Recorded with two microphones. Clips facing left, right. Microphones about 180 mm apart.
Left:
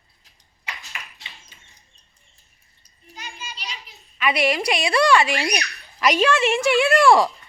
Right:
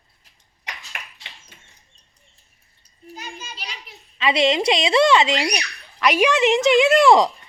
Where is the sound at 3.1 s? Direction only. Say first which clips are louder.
Right 2 dB; 50° right (ahead or behind).